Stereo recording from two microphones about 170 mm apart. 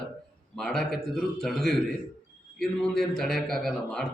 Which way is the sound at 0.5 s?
Centre (ahead or behind).